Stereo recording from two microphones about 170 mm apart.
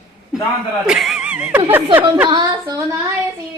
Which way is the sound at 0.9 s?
Centre (ahead or behind).